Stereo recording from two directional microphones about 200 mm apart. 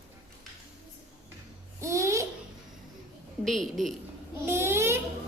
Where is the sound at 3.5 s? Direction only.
Centre (ahead or behind).